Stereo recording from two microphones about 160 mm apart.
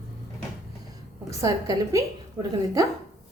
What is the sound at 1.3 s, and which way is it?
A woman's voice, 20° right (ahead or behind).